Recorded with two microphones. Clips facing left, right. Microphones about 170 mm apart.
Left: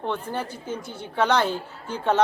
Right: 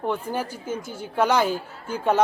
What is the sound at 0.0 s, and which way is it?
A woman's voice, 10° right (ahead or behind).